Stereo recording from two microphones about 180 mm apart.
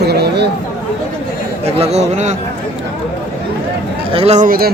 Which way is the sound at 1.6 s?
35° right (ahead or behind).